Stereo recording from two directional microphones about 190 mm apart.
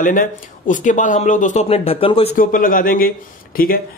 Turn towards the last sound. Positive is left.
turn(degrees=50)  # may be behind; listen again after turning